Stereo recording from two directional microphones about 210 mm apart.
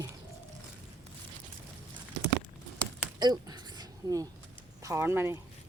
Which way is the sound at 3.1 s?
20° right (ahead or behind).